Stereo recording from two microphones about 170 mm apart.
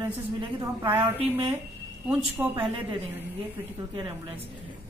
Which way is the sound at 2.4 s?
15° right (ahead or behind).